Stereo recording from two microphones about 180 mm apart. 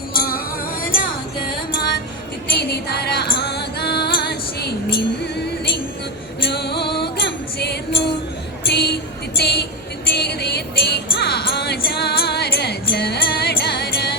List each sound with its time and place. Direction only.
0.1 s music: 55° left (ahead or behind)
6.4 s music: 65° left (ahead or behind)
8.7 s a sound: 65° left (ahead or behind)
10.1 s music: 65° left (ahead or behind)